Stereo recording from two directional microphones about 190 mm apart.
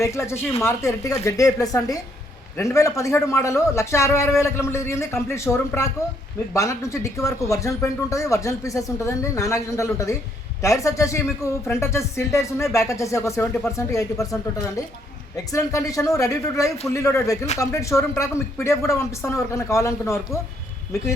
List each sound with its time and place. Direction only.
0.0 s speech: 15° left (ahead or behind)
15.5 s speech: 15° left (ahead or behind)